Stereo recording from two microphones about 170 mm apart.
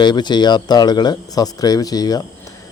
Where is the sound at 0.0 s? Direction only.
25° left (ahead or behind).